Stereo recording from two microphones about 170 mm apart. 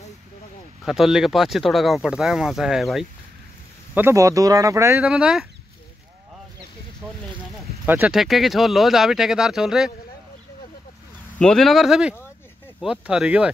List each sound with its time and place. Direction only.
0.8 s speech: centre (ahead or behind)
3.9 s speech: 15° right (ahead or behind)
5.0 s speech: 5° right (ahead or behind)
7.8 s speech: 10° right (ahead or behind)
11.3 s speech: 5° left (ahead or behind)